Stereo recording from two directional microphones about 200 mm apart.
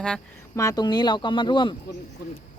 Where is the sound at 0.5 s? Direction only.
15° left (ahead or behind).